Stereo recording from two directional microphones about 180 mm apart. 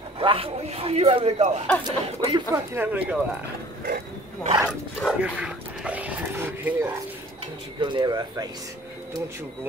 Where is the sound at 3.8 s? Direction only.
55° right (ahead or behind).